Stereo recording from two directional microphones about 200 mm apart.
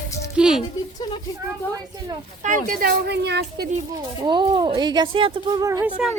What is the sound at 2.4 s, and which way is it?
Speech, 40° right (ahead or behind).